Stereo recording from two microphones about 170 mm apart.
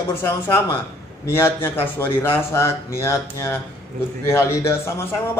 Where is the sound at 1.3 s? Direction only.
15° left (ahead or behind).